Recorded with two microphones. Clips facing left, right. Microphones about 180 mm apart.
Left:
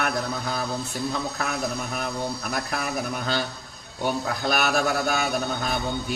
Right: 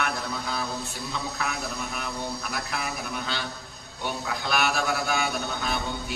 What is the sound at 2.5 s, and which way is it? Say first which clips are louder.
A man's voice: left 4 dB; 45° left (ahead or behind).